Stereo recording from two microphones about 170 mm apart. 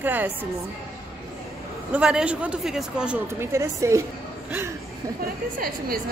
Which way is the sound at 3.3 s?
15° right (ahead or behind).